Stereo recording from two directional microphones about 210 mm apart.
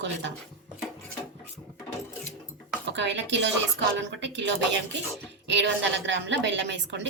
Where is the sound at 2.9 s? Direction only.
55° right (ahead or behind).